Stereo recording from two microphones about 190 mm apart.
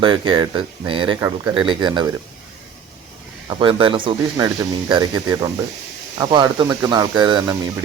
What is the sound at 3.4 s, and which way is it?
Speech, 25° right (ahead or behind).